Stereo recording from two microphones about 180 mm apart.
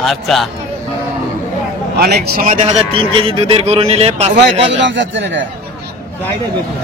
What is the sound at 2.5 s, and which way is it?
A man's voice, 35° right (ahead or behind).